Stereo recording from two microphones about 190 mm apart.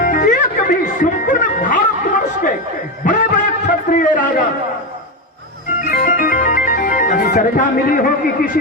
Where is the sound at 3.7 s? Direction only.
45° left (ahead or behind).